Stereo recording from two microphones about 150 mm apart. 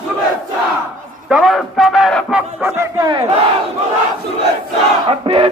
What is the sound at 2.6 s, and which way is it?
Speech, 25° right (ahead or behind).